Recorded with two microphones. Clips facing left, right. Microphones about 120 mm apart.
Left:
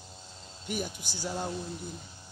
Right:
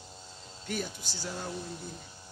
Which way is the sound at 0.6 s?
15° left (ahead or behind).